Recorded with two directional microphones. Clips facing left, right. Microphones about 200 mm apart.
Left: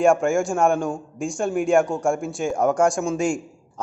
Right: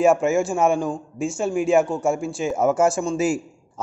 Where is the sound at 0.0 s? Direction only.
5° right (ahead or behind).